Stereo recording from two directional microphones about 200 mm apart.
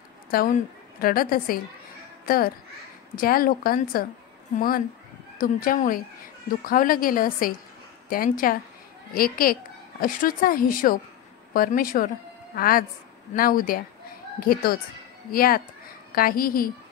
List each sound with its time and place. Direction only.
0.3 s a woman's voice: 45° left (ahead or behind)